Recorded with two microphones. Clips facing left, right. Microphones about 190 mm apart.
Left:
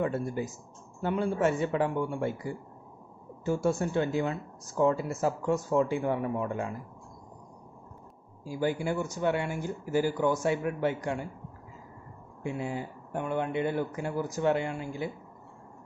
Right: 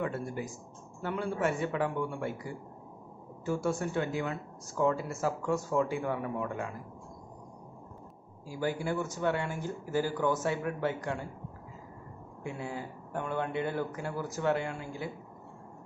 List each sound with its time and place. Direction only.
0.0 s speech: 25° left (ahead or behind)
8.5 s speech: 20° left (ahead or behind)
12.4 s speech: 20° left (ahead or behind)